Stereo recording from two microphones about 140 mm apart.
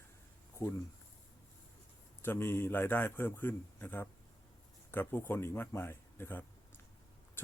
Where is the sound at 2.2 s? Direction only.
15° left (ahead or behind).